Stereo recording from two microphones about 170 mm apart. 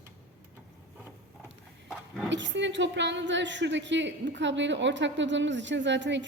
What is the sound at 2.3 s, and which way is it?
A woman's voice, 90° right.